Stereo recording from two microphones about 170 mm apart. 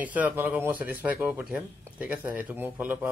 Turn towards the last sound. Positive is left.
turn(degrees=-10)  # may be behind; listen again after turning